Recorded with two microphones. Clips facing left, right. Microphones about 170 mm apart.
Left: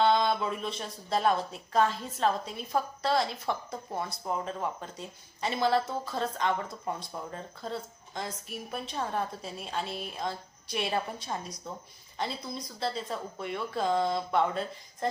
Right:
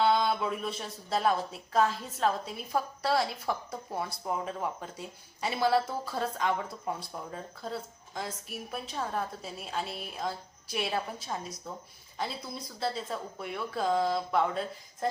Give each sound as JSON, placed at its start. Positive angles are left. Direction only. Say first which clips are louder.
{"t": 0.0, "sound": "speech", "louder": "left 1 dB", "side_deg": -5}